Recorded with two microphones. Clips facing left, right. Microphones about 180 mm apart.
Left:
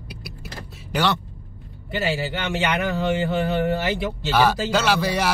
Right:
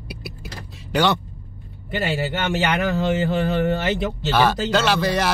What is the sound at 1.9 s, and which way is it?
Speech, 55° right (ahead or behind).